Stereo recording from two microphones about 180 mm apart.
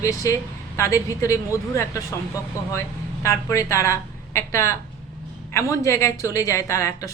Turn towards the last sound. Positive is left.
turn(degrees=15)  # may be behind; listen again after turning